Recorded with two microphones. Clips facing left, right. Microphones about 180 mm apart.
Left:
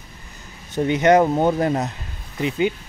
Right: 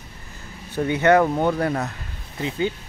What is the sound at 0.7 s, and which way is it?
Speech, 20° left (ahead or behind).